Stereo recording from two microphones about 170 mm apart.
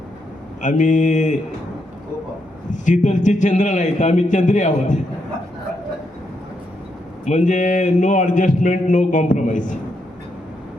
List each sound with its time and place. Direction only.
0.6 s a man's voice: 50° left (ahead or behind)
2.6 s a man's voice: 45° left (ahead or behind)
7.3 s a man's voice: 45° left (ahead or behind)